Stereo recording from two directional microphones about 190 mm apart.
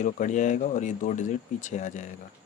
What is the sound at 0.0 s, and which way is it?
Speech, 40° left (ahead or behind).